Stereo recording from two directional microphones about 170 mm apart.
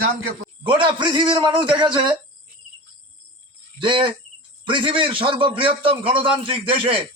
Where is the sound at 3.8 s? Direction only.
30° right (ahead or behind).